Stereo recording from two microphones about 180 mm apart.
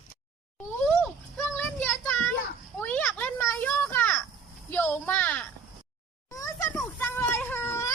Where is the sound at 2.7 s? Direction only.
10° left (ahead or behind).